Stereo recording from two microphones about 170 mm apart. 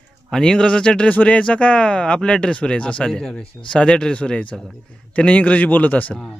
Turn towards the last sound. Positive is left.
turn(degrees=5)  # may be behind; listen again after turning